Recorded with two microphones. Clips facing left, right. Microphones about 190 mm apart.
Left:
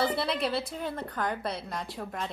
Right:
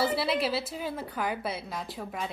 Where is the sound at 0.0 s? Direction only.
5° right (ahead or behind).